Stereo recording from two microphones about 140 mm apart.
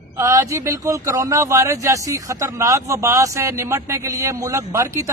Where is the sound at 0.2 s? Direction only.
20° right (ahead or behind).